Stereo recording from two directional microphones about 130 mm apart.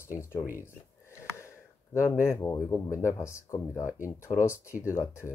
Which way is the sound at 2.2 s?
20° left (ahead or behind).